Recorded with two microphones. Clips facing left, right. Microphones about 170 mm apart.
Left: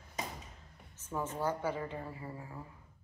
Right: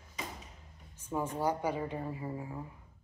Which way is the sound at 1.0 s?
15° right (ahead or behind).